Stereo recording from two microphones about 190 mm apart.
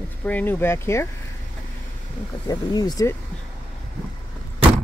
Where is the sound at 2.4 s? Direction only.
20° left (ahead or behind).